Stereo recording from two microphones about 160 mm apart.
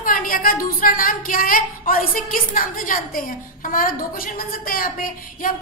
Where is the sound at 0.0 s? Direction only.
60° left (ahead or behind).